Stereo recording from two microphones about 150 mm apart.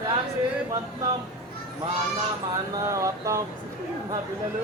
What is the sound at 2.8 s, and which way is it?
Speech, 20° right (ahead or behind).